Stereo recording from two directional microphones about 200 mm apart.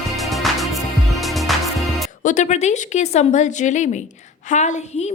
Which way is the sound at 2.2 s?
40° left (ahead or behind).